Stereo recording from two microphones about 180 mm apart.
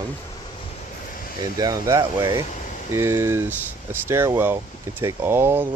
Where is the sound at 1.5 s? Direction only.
20° right (ahead or behind).